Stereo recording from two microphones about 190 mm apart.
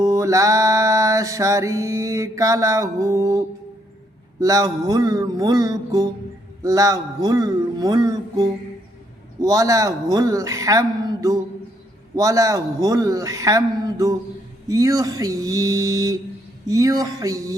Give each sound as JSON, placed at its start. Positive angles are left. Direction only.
{"t": 0.0, "sound": "music", "side_deg": -15}
{"t": 4.4, "sound": "a man's voice", "side_deg": -20}
{"t": 9.4, "sound": "music", "side_deg": -20}